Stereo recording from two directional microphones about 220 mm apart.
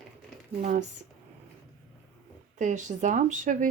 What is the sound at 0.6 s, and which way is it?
Speech, 30° right (ahead or behind).